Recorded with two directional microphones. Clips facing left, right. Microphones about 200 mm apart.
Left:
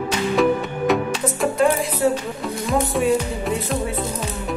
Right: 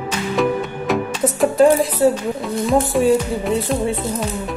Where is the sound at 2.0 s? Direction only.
35° right (ahead or behind).